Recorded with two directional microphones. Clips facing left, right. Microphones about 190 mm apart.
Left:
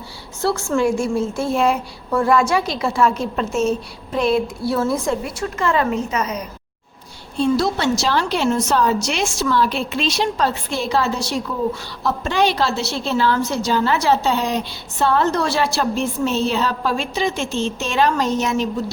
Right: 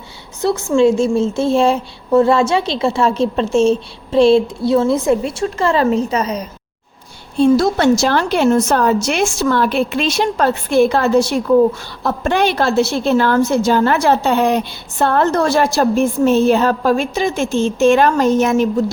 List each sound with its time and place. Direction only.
0.4 s a woman's voice: 20° right (ahead or behind)
7.3 s a woman's voice: 50° right (ahead or behind)